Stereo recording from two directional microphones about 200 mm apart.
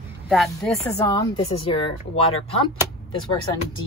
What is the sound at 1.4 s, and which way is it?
Speech, 30° left (ahead or behind).